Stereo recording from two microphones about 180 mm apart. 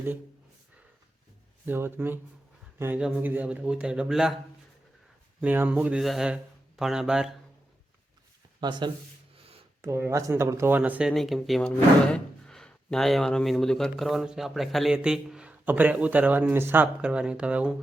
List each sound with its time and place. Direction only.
1.6 s speech: 10° right (ahead or behind)
5.4 s speech: 10° right (ahead or behind)
8.6 s speech: 25° right (ahead or behind)
9.8 s speech: 15° right (ahead or behind)